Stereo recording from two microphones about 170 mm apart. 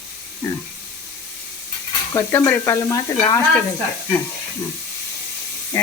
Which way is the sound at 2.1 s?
15° left (ahead or behind).